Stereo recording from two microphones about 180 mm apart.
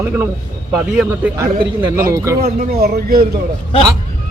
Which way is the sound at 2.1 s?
15° right (ahead or behind).